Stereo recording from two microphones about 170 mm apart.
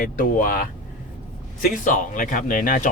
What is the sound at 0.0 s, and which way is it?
Speech, 55° left (ahead or behind).